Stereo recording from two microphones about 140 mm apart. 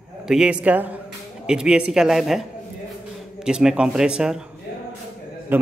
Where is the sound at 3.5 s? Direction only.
5° right (ahead or behind).